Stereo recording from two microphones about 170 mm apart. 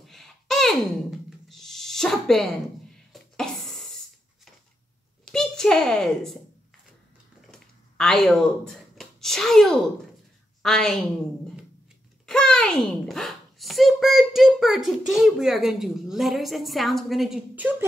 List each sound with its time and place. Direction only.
0.0 s music: centre (ahead or behind)
3.1 s a sound: centre (ahead or behind)
5.3 s a child's voice: 5° left (ahead or behind)
7.4 s a sound: 5° left (ahead or behind)
10.6 s a child's voice: centre (ahead or behind)
12.3 s a child's voice: 5° left (ahead or behind)